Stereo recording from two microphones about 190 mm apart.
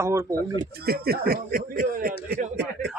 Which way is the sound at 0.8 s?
55° right (ahead or behind).